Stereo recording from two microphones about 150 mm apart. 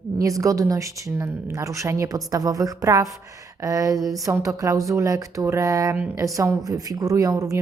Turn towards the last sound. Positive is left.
turn(degrees=-25)  # may be behind; listen again after turning